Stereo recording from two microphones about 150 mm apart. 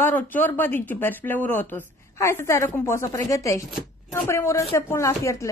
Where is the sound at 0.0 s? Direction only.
15° left (ahead or behind).